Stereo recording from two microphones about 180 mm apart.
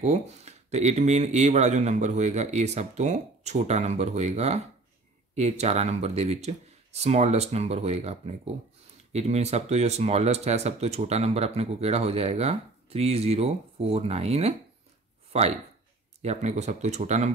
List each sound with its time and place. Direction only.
0.0 s speech: 40° right (ahead or behind)